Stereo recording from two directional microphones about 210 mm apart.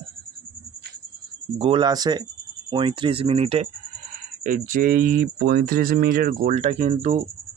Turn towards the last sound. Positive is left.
turn(degrees=-35)  # may be behind; listen again after turning